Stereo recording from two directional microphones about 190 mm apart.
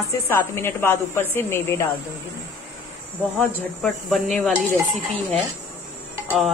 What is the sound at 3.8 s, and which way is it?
Speech, centre (ahead or behind).